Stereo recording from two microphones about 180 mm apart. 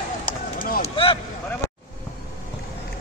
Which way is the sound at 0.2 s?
50° left (ahead or behind).